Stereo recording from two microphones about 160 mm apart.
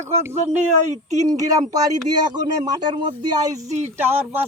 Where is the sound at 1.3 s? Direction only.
20° right (ahead or behind).